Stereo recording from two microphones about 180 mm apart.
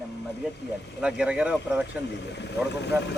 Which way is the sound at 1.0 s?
5° right (ahead or behind).